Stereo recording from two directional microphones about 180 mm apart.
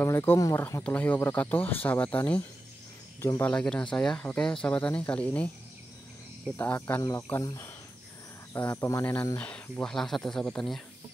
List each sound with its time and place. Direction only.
0.0 s speech: 15° left (ahead or behind)
6.5 s speech: 10° left (ahead or behind)